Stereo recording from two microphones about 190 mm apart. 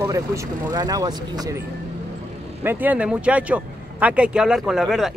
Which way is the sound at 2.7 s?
10° right (ahead or behind).